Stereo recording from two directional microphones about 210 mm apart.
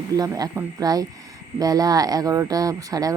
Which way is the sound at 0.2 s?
15° right (ahead or behind).